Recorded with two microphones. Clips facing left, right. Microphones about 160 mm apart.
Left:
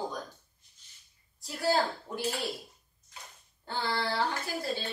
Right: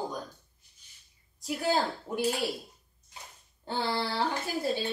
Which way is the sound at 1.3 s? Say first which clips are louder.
Even; 15° right (ahead or behind).